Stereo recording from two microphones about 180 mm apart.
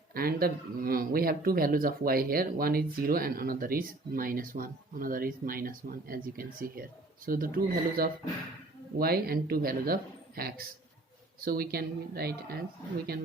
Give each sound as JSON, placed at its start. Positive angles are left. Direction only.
{"t": 0.1, "sound": "speech", "side_deg": -55}